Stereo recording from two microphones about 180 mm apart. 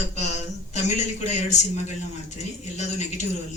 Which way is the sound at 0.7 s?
40° left (ahead or behind).